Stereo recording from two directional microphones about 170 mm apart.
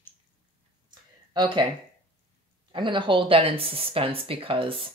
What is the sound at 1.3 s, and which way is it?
Speech, 25° right (ahead or behind).